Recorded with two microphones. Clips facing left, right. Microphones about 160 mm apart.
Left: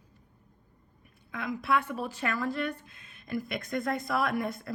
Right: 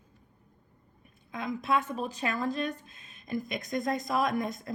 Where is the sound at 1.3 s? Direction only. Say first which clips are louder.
Even; 20° right (ahead or behind).